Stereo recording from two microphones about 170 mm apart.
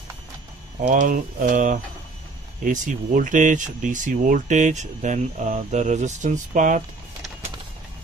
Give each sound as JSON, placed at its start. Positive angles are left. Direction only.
{"t": 0.7, "sound": "speech", "side_deg": -50}